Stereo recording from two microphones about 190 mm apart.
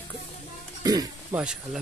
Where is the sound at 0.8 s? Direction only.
20° right (ahead or behind).